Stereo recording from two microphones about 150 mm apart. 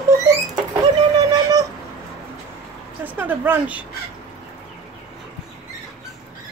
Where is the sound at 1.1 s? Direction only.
25° right (ahead or behind).